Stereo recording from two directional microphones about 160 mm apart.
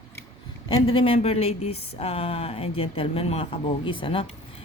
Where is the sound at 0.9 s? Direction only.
35° left (ahead or behind).